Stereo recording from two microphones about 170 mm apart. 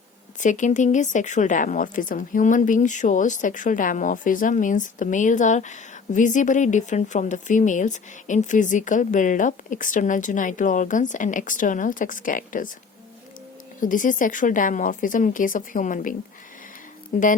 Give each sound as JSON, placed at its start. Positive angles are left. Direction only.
{"t": 0.3, "sound": "speech", "side_deg": 45}
{"t": 13.8, "sound": "speech", "side_deg": 50}